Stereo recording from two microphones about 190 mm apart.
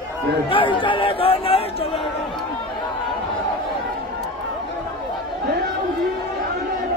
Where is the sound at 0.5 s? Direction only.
25° left (ahead or behind).